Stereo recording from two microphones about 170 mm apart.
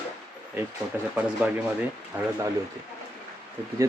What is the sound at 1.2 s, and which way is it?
Speech, 5° right (ahead or behind).